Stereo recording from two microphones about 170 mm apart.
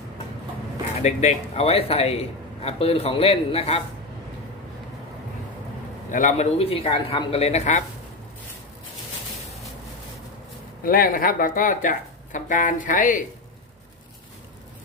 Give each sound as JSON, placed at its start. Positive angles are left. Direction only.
{"t": 1.0, "sound": "a man's voice", "side_deg": 40}
{"t": 6.1, "sound": "a man's voice", "side_deg": 45}
{"t": 10.8, "sound": "speech", "side_deg": 60}